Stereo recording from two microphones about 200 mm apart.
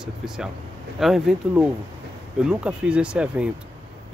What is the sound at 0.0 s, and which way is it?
Speech, 5° right (ahead or behind).